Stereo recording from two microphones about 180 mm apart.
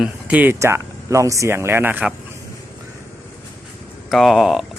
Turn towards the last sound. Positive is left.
turn(degrees=0)  # may be behind; listen again after turning